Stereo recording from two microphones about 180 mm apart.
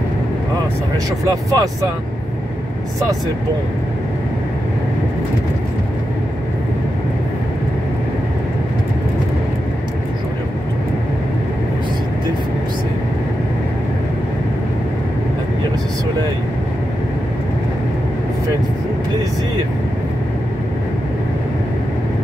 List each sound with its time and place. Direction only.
1.2 s speech: 20° right (ahead or behind)